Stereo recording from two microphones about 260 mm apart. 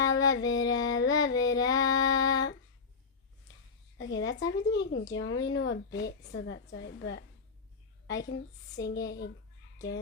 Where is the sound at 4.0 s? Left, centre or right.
Left.